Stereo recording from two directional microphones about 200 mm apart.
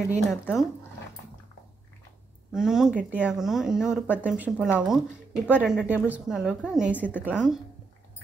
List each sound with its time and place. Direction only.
0.3 s speech: centre (ahead or behind)
2.5 s speech: 5° right (ahead or behind)